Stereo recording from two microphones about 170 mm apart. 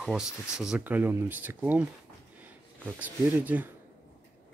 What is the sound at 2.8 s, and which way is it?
Speech, 10° right (ahead or behind).